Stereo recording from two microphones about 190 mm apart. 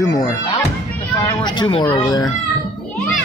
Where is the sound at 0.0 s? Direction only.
15° left (ahead or behind).